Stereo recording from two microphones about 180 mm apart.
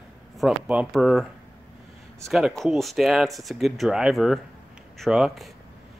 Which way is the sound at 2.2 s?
Centre (ahead or behind).